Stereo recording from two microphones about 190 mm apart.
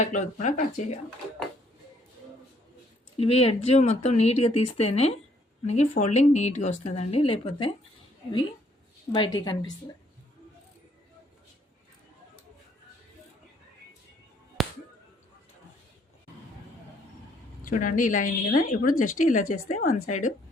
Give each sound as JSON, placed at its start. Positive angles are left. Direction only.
{"t": 0.0, "sound": "a woman's voice", "side_deg": 40}
{"t": 3.2, "sound": "a woman's voice", "side_deg": 30}
{"t": 9.1, "sound": "a woman's voice", "side_deg": 25}
{"t": 14.6, "sound": "a sound", "side_deg": 0}
{"t": 17.6, "sound": "a woman's voice", "side_deg": 45}